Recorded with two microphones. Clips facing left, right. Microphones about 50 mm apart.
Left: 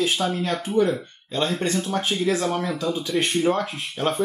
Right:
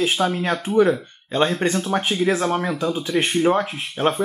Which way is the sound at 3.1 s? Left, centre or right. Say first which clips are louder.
Right 2 dB; centre.